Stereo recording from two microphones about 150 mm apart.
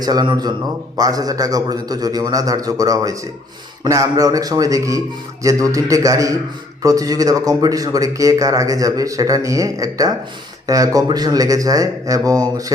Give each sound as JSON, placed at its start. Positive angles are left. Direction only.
{"t": 0.0, "sound": "speech", "side_deg": -25}